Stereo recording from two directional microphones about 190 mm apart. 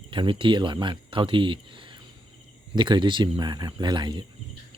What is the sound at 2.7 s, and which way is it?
Speech, 25° right (ahead or behind).